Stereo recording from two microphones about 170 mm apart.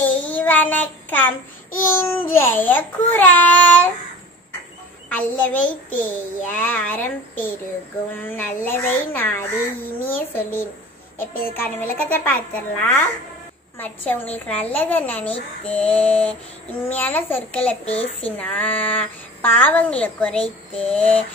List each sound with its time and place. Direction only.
0.0 s child singing: 10° left (ahead or behind)
2.0 s speech: 15° left (ahead or behind)
5.1 s speech: 10° left (ahead or behind)
5.7 s a child's voice: 50° left (ahead or behind)
6.5 s speech: 10° left (ahead or behind)
17.8 s a child's voice: 40° left (ahead or behind)
18.2 s speech: 10° left (ahead or behind)